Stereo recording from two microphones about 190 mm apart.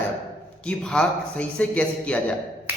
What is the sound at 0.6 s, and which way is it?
A man's voice, 5° left (ahead or behind).